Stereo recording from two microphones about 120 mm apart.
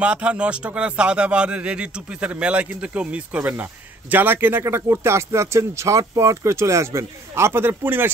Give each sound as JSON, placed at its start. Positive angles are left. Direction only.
{"t": 0.0, "sound": "a man's voice", "side_deg": -10}